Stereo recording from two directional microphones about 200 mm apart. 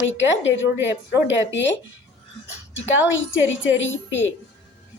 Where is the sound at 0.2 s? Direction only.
65° left (ahead or behind).